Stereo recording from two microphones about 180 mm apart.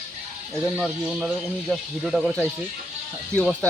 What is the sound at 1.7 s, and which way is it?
Speech, 5° right (ahead or behind).